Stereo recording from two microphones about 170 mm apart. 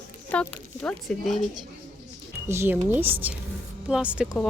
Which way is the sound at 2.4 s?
15° right (ahead or behind).